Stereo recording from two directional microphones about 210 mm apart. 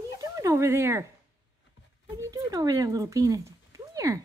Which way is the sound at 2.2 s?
15° right (ahead or behind).